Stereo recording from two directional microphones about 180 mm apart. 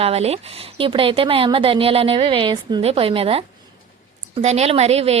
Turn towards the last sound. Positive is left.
turn(degrees=-35)  # may be behind; listen again after turning